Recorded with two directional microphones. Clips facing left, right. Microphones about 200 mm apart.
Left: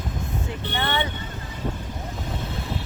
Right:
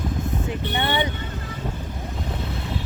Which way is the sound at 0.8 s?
20° right (ahead or behind).